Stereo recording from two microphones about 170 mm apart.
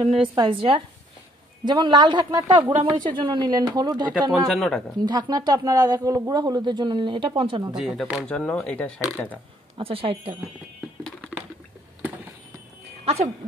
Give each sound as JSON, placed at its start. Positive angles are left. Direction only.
{"t": 0.0, "sound": "speech", "side_deg": -35}
{"t": 4.5, "sound": "speech", "side_deg": 0}
{"t": 4.9, "sound": "speech", "side_deg": -25}
{"t": 7.7, "sound": "speech", "side_deg": -5}
{"t": 9.8, "sound": "speech", "side_deg": -35}
{"t": 11.1, "sound": "typing", "side_deg": 5}
{"t": 13.0, "sound": "speech", "side_deg": -35}